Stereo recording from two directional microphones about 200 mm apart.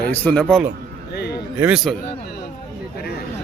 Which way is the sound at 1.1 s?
55° left (ahead or behind).